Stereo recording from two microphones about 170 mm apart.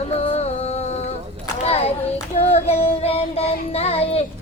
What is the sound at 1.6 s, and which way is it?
Child singing, 35° left (ahead or behind).